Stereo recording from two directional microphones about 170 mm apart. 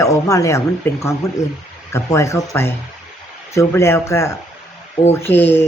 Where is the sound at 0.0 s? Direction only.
20° left (ahead or behind).